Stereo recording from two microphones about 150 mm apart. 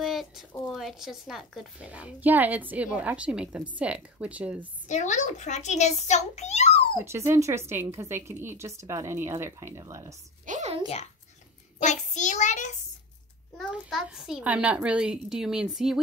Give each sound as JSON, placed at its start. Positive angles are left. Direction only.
{"t": 0.0, "sound": "a sound", "side_deg": 0}
{"t": 0.7, "sound": "speech", "side_deg": 0}
{"t": 4.8, "sound": "a child's voice", "side_deg": 55}
{"t": 7.1, "sound": "speech", "side_deg": -20}
{"t": 10.4, "sound": "a sound", "side_deg": -60}
{"t": 11.8, "sound": "a child's voice", "side_deg": 55}
{"t": 13.7, "sound": "a child's voice", "side_deg": -5}